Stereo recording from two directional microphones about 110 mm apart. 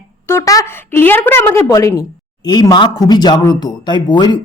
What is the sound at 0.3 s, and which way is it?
A woman's voice, 25° left (ahead or behind).